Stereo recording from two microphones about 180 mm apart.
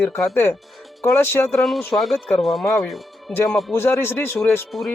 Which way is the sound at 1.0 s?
10° left (ahead or behind).